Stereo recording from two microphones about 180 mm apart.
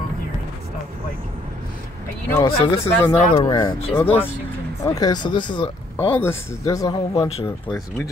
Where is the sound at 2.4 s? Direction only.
30° left (ahead or behind).